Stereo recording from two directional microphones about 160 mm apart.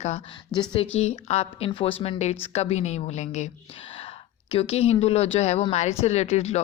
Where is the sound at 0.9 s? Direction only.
40° left (ahead or behind).